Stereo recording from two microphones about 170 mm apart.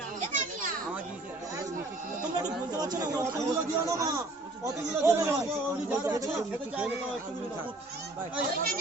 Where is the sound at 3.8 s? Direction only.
20° right (ahead or behind).